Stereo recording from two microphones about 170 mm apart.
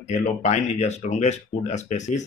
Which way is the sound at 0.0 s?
45° left (ahead or behind).